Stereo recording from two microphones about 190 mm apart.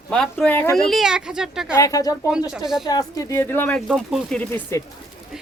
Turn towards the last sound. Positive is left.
turn(degrees=15)  # may be behind; listen again after turning